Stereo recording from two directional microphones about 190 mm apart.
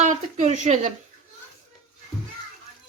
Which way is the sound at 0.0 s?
40° right (ahead or behind).